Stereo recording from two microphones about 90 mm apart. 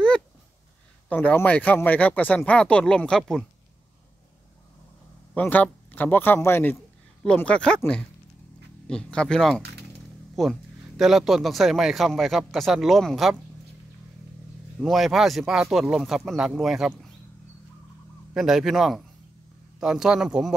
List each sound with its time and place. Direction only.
1.0 s speech: 20° left (ahead or behind)
5.3 s a man's voice: 20° left (ahead or behind)
7.4 s speech: 10° left (ahead or behind)
8.8 s a man's voice: 10° left (ahead or behind)
14.8 s a man's voice: centre (ahead or behind)
18.3 s a man's voice: 5° right (ahead or behind)